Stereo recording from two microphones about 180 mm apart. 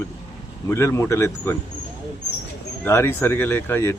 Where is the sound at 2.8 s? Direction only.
15° left (ahead or behind).